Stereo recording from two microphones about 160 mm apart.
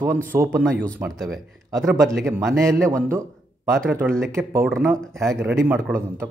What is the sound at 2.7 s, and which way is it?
A man's voice, 15° right (ahead or behind).